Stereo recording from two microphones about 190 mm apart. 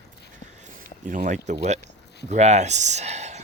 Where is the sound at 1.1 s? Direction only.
40° right (ahead or behind).